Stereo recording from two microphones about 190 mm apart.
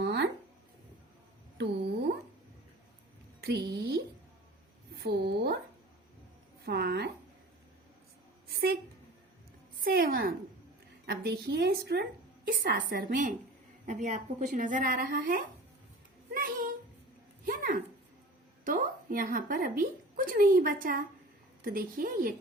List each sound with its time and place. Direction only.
0.0 s a sound: 65° right (ahead or behind)
1.5 s speech: 60° right (ahead or behind)
3.4 s a woman's voice: 55° right (ahead or behind)
6.7 s a woman's voice: 60° right (ahead or behind)
9.8 s a woman's voice: 50° right (ahead or behind)
12.5 s a woman's voice: 50° right (ahead or behind)
13.8 s a woman's voice: 40° right (ahead or behind)